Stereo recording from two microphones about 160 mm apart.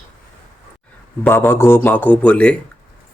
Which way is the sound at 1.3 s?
15° left (ahead or behind).